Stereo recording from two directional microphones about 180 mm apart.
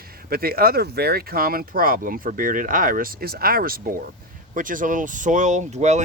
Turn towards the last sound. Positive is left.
turn(degrees=-40)  # may be behind; listen again after turning